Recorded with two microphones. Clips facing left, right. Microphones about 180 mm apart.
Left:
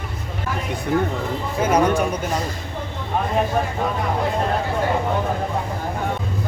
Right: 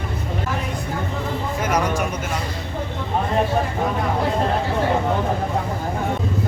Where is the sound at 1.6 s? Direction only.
30° left (ahead or behind).